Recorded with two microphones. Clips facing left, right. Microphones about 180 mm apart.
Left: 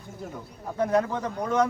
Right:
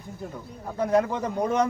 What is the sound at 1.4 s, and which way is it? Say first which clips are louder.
Speech: right 1 dB; 25° right (ahead or behind).